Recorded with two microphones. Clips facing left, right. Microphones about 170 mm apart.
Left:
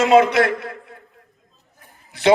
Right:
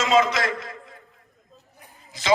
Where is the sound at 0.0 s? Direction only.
60° left (ahead or behind).